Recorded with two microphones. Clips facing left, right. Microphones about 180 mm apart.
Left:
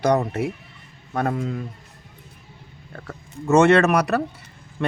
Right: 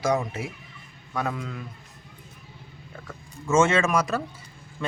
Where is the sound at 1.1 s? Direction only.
50° left (ahead or behind).